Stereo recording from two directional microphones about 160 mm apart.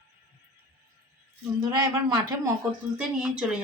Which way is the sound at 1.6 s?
20° right (ahead or behind).